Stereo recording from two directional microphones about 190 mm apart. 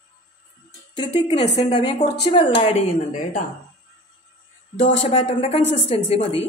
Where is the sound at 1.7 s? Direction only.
25° left (ahead or behind).